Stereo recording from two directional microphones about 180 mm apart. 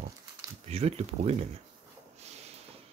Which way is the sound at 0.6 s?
35° right (ahead or behind).